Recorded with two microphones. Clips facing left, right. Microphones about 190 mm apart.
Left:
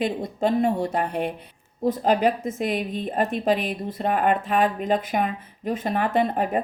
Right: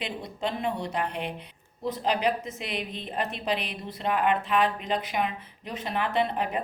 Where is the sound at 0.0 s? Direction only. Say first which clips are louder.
Left 8 dB; 45° left (ahead or behind).